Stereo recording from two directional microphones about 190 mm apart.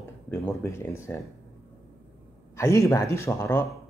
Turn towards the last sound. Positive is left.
turn(degrees=15)  # may be behind; listen again after turning